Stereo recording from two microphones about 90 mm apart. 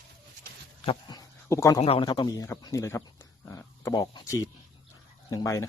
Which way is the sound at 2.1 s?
50° left (ahead or behind).